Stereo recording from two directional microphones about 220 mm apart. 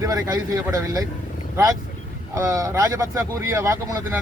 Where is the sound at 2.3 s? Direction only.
15° right (ahead or behind).